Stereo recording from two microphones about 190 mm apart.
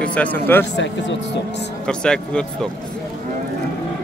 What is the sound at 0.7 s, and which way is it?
Speech, 65° left (ahead or behind).